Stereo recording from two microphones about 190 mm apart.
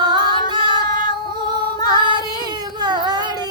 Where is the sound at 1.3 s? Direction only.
20° right (ahead or behind).